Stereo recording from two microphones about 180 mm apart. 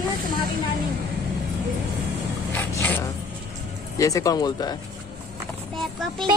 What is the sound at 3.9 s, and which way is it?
Speech, 20° left (ahead or behind).